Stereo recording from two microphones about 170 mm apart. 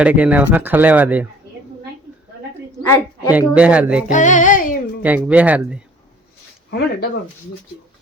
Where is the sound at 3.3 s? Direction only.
10° right (ahead or behind).